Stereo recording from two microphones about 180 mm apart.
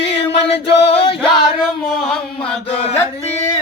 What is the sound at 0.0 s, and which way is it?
Music, 75° left (ahead or behind).